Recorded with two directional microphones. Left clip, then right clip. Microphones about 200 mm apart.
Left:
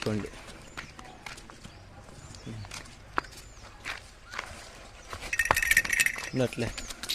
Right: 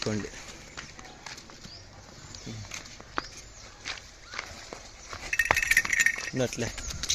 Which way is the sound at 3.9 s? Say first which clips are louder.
Even; 10° left (ahead or behind).